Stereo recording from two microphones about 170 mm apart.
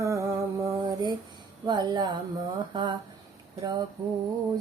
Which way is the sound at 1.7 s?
25° right (ahead or behind).